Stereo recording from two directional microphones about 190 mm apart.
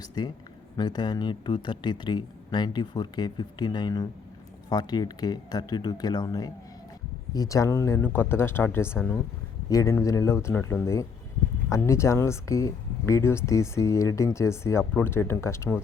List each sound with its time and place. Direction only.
0.0 s speech: 25° left (ahead or behind)